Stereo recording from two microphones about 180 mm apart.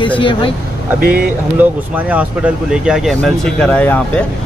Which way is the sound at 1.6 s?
10° right (ahead or behind).